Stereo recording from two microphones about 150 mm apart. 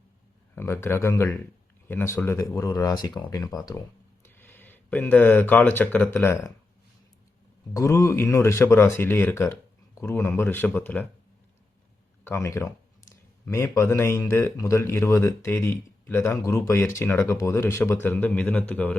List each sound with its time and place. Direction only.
0.5 s speech: 15° left (ahead or behind)
7.7 s speech: 20° left (ahead or behind)
12.2 s speech: 20° left (ahead or behind)